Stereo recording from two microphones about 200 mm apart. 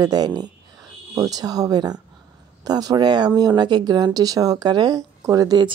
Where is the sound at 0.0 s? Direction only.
20° right (ahead or behind).